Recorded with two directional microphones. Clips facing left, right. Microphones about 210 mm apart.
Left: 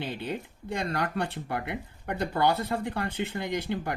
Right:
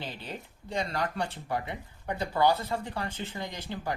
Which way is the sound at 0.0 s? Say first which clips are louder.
Left 6 dB; 60° left (ahead or behind).